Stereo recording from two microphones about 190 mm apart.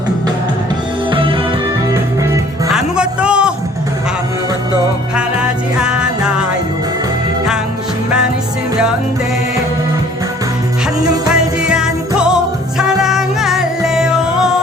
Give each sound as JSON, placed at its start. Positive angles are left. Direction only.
{"t": 1.1, "sound": "music", "side_deg": -25}
{"t": 2.7, "sound": "a sound", "side_deg": -5}
{"t": 5.8, "sound": "music", "side_deg": -5}
{"t": 11.3, "sound": "music", "side_deg": -5}